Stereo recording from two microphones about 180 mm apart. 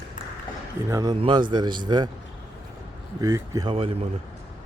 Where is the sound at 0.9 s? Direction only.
20° right (ahead or behind).